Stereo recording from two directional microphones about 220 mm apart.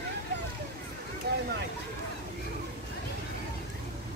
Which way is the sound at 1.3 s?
45° right (ahead or behind).